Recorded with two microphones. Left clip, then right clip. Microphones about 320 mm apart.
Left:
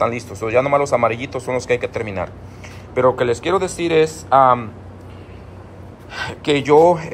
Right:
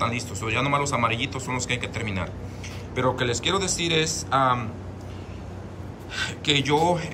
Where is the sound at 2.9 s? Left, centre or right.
Centre.